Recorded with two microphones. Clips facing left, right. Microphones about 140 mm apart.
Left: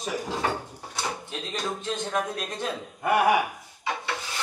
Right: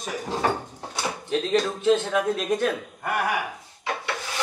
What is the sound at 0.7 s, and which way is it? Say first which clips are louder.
Drawer open or close: right 2 dB; 80° right.